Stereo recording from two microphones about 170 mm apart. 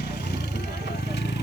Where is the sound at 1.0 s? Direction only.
90° left.